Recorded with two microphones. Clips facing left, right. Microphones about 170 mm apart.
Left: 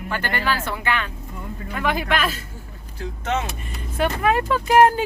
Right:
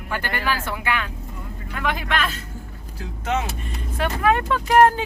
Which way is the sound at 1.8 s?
5° left (ahead or behind).